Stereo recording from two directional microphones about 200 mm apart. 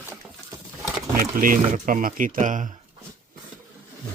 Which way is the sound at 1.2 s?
45° right (ahead or behind).